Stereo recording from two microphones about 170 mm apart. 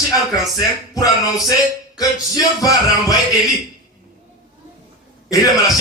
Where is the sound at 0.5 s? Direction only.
20° left (ahead or behind).